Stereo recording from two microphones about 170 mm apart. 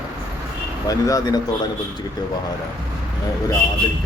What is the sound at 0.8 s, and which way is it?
Speech, 20° left (ahead or behind).